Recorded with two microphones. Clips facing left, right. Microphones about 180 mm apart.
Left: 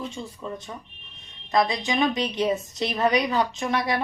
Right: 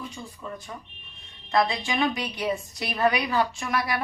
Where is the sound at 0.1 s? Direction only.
25° left (ahead or behind).